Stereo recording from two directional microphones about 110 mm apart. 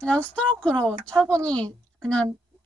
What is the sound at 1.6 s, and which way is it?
Speech, 10° left (ahead or behind).